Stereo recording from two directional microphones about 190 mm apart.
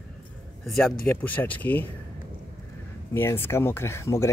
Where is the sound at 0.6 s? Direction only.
Centre (ahead or behind).